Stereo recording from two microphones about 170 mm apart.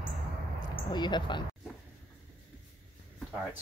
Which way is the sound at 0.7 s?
25° left (ahead or behind).